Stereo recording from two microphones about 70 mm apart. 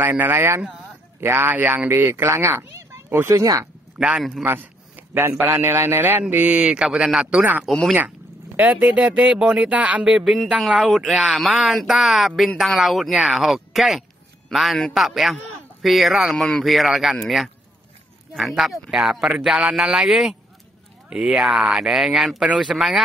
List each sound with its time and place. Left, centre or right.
0.0 s speech: right
4.0 s a man's voice: centre
4.6 s a sound: right
5.4 s speech: right
6.3 s speech: centre
8.5 s speech: right
10.0 s a man's voice: centre